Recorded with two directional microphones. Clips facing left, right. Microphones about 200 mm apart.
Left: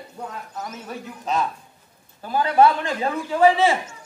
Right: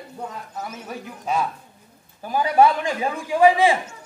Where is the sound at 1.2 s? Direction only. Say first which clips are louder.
Even; 10° right (ahead or behind).